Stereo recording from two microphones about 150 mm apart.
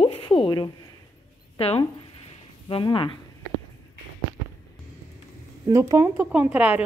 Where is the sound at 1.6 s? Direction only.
40° left (ahead or behind).